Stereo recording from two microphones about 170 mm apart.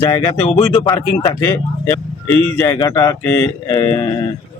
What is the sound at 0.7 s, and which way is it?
Speech, 15° left (ahead or behind).